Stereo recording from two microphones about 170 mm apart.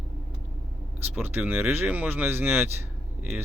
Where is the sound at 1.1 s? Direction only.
10° right (ahead or behind).